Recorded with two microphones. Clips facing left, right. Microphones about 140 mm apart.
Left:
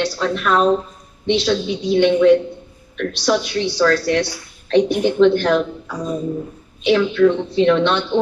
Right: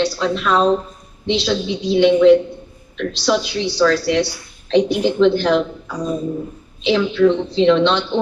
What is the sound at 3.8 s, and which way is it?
Speech, 20° right (ahead or behind).